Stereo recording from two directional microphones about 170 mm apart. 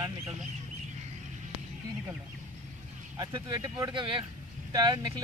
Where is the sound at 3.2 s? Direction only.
20° right (ahead or behind).